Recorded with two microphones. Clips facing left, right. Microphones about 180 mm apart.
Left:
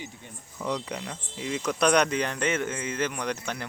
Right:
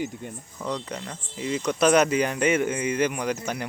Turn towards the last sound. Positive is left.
turn(degrees=-10)  # may be behind; listen again after turning